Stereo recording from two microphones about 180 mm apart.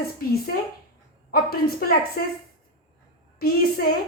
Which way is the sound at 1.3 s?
55° left (ahead or behind).